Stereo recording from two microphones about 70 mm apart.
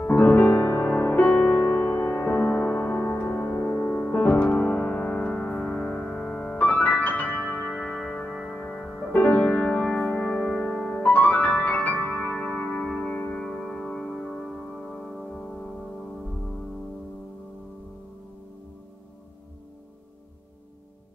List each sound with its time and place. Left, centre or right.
0.0 s music: left
1.7 s music: left; by 8.5 s centre
8.5 s music: centre
9.6 s music: centre
10.5 s music: centre
10.9 s music: left